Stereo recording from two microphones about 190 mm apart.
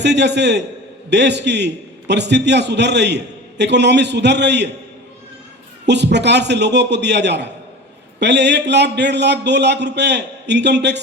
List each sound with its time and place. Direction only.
0.0 s a man's voice: 65° right (ahead or behind)
5.8 s a man's voice: 65° right (ahead or behind)